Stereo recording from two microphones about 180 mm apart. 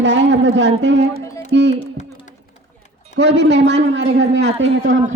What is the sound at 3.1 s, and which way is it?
A man's voice, 85° right.